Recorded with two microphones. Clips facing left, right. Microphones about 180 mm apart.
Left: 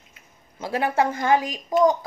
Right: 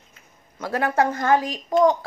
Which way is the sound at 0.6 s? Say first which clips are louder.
Right 1 dB; 15° left (ahead or behind).